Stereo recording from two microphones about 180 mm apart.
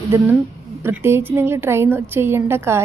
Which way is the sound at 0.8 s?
15° right (ahead or behind).